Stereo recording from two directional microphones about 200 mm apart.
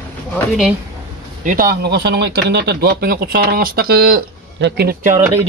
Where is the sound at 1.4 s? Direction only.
45° right (ahead or behind).